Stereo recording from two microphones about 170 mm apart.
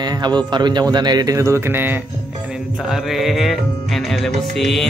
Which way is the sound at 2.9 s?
Centre (ahead or behind).